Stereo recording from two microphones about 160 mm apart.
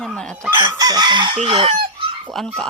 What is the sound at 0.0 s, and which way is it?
Chicken, 5° left (ahead or behind).